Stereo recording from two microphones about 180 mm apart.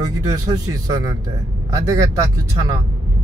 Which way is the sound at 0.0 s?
20° right (ahead or behind).